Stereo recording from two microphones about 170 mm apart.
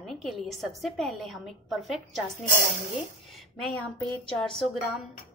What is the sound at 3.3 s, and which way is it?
A woman's voice, centre (ahead or behind).